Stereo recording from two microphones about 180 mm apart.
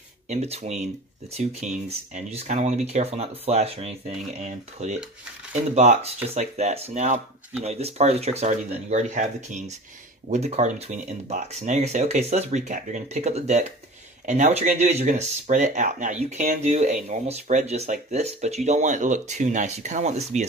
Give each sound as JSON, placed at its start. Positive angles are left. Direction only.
{"t": 0.3, "sound": "speech", "side_deg": -35}